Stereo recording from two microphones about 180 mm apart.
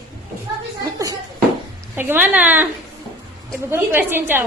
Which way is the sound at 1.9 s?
10° right (ahead or behind).